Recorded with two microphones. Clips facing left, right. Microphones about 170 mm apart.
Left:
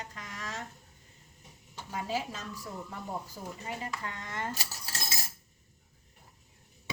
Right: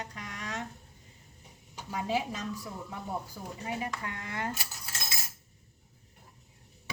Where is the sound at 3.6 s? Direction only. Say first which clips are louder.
Right 4 dB; 15° right (ahead or behind).